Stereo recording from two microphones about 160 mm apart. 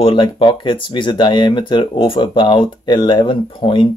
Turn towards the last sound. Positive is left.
turn(degrees=30)  # may be behind; listen again after turning